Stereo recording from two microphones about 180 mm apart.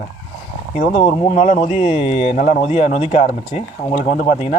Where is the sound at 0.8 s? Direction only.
40° left (ahead or behind).